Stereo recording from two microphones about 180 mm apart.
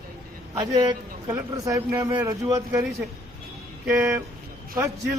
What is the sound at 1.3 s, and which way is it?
A man's voice, 20° right (ahead or behind).